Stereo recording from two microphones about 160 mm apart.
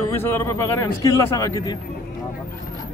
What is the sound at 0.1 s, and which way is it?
A man's voice, 15° left (ahead or behind).